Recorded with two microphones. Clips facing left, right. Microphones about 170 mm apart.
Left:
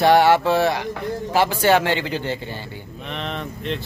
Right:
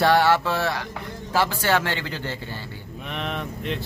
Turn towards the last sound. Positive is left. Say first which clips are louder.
# left 2 dB
turn(degrees=-5)  # may be behind; listen again after turning